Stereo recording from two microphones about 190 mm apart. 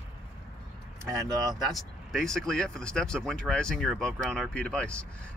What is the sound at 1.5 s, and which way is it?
Speech, centre (ahead or behind).